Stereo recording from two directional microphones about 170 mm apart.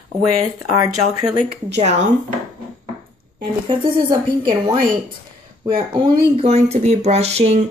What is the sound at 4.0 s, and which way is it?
A woman's voice, 25° right (ahead or behind).